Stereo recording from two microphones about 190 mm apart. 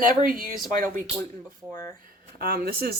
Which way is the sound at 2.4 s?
55° right (ahead or behind).